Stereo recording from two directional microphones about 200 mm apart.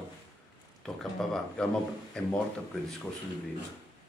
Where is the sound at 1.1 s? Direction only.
Centre (ahead or behind).